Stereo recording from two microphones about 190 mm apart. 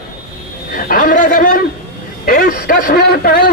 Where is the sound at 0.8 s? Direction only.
50° left (ahead or behind).